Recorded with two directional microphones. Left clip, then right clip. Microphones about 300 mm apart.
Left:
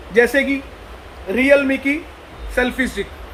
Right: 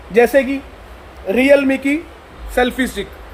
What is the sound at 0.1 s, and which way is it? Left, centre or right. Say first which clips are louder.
A man's voice: right 2 dB; right.